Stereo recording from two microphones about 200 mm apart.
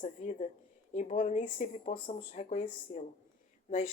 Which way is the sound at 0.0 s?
40° left (ahead or behind).